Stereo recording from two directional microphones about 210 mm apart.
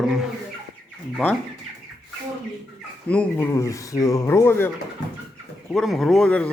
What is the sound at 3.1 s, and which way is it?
Speech, 10° left (ahead or behind).